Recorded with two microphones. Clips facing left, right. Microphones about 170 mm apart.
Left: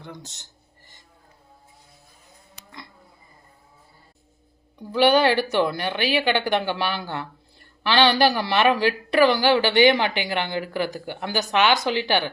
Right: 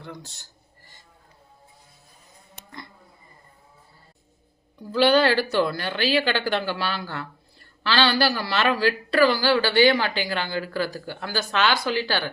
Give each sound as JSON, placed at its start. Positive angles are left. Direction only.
{"t": 0.0, "sound": "speech", "side_deg": 20}
{"t": 4.8, "sound": "speech", "side_deg": 15}